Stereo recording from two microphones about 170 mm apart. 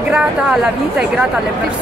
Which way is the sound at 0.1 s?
5° right (ahead or behind).